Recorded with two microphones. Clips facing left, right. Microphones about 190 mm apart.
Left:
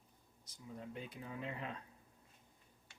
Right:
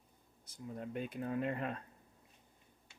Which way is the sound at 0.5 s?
55° right (ahead or behind).